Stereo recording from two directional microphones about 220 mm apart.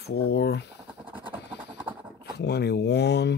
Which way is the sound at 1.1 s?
20° right (ahead or behind).